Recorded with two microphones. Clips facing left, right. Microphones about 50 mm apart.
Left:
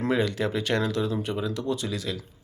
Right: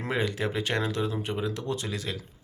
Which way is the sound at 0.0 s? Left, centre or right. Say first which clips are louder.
Left 4 dB; right.